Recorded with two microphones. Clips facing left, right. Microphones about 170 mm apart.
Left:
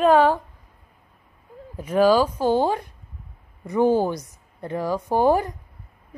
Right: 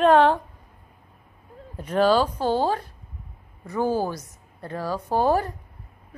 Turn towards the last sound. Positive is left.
turn(degrees=15)  # may be behind; listen again after turning